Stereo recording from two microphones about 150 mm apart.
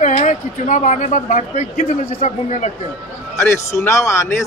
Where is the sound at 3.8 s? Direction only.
20° left (ahead or behind).